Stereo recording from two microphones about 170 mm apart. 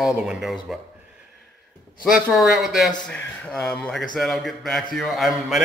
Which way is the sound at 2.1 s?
Centre (ahead or behind).